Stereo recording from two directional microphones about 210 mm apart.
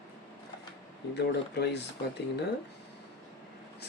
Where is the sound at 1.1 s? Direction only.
50° left (ahead or behind).